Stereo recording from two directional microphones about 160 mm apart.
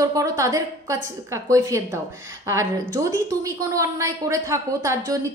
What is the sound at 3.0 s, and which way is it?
A woman's voice, 20° right (ahead or behind).